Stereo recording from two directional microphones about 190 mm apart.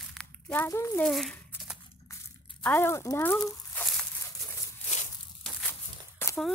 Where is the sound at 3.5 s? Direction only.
Centre (ahead or behind).